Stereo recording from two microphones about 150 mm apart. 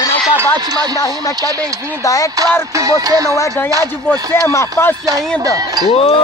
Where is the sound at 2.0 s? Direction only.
25° left (ahead or behind).